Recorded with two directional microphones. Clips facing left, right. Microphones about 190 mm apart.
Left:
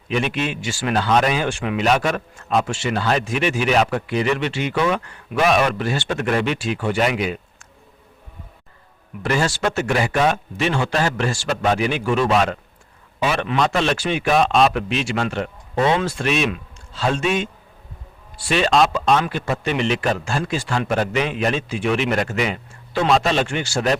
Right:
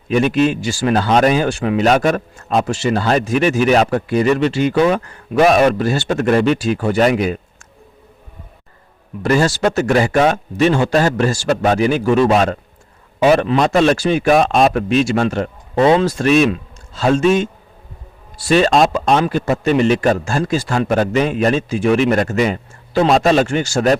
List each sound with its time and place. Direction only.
0.1 s speech: 40° right (ahead or behind)
9.2 s speech: 40° right (ahead or behind)
19.1 s speech: 35° right (ahead or behind)